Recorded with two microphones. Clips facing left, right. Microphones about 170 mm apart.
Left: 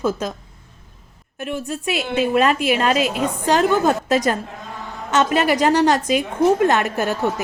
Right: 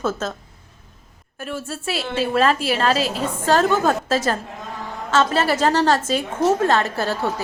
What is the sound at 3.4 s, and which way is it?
A woman's voice, 15° left (ahead or behind).